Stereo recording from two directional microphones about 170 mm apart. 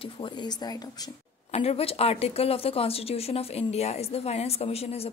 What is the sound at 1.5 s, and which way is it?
A woman's voice, 35° left (ahead or behind).